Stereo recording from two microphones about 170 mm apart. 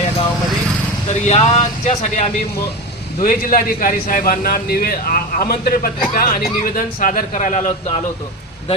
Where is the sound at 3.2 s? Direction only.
55° left (ahead or behind).